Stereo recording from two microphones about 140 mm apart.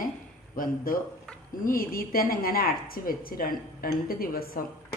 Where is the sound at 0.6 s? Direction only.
90° left.